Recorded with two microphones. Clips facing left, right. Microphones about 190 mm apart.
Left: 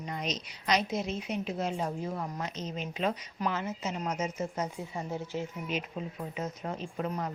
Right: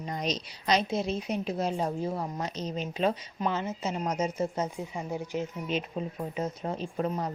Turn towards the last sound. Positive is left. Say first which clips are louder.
# right 3 dB
turn(degrees=-35)  # may be behind; listen again after turning